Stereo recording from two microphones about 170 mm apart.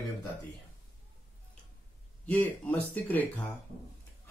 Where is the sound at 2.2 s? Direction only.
10° left (ahead or behind).